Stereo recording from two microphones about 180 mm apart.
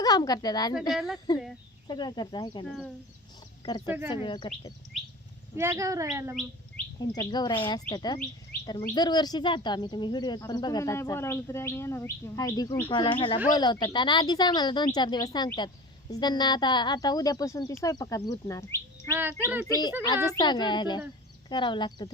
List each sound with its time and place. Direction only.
0.0 s speech: 20° left (ahead or behind)
0.7 s speech: centre (ahead or behind)
1.9 s speech: 25° left (ahead or behind)
2.6 s speech: centre (ahead or behind)
3.8 s speech: 10° right (ahead or behind)
4.1 s speech: 25° left (ahead or behind)
5.5 s speech: 15° right (ahead or behind)
7.2 s speech: 25° left (ahead or behind)
19.1 s speech: 10° right (ahead or behind)
19.6 s speech: 20° left (ahead or behind)